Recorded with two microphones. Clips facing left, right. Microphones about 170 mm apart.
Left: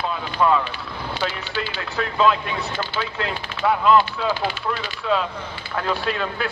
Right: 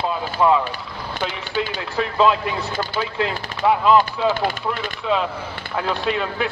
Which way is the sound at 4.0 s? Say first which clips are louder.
Right 3 dB; 45° right (ahead or behind).